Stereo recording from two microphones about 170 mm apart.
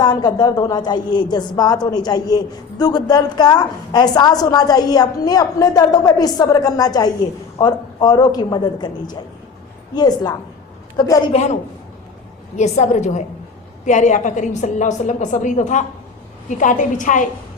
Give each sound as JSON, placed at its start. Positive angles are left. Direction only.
{"t": 0.0, "sound": "a woman's voice", "side_deg": 25}
{"t": 11.3, "sound": "a woman's voice", "side_deg": 40}
{"t": 12.5, "sound": "a woman's voice", "side_deg": 45}